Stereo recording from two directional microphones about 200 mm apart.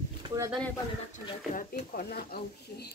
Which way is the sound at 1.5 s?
40° left (ahead or behind).